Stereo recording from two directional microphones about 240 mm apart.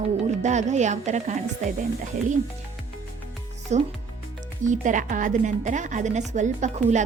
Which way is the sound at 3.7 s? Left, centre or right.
Right.